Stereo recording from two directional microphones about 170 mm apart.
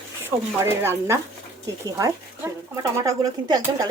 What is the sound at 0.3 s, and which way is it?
A woman's voice, 15° right (ahead or behind).